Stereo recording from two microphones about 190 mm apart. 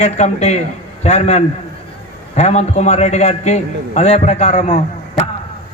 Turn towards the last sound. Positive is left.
turn(degrees=35)  # may be behind; listen again after turning